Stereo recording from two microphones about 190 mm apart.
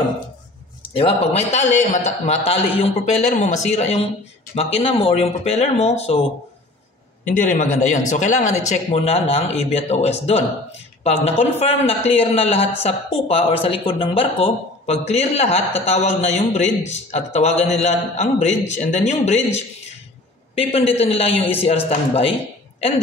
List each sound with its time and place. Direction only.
0.9 s speech: 30° left (ahead or behind)
7.2 s speech: 40° left (ahead or behind)